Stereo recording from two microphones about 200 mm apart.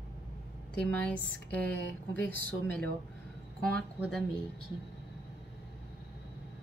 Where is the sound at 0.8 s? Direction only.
10° left (ahead or behind).